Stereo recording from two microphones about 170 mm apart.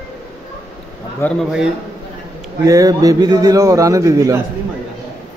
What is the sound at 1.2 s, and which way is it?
Speech, 15° left (ahead or behind).